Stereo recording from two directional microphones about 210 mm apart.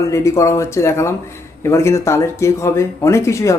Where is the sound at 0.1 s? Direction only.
15° left (ahead or behind).